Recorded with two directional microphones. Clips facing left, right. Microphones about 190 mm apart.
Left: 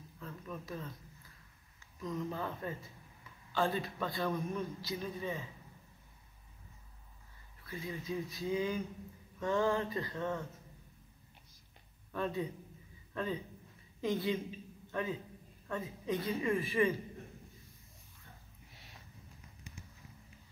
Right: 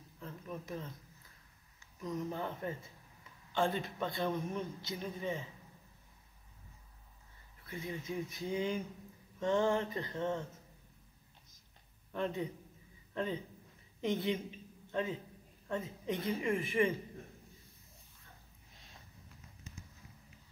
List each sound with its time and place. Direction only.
0.2 s a sound: 20° right (ahead or behind)
2.0 s a man's voice: 20° right (ahead or behind)
7.6 s a man's voice: 20° right (ahead or behind)
12.1 s a man's voice: 20° right (ahead or behind)